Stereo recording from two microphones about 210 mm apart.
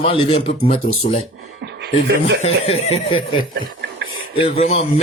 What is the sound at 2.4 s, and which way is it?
Speech, 30° left (ahead or behind).